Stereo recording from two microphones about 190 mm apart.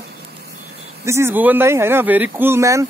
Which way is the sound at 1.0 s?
15° right (ahead or behind).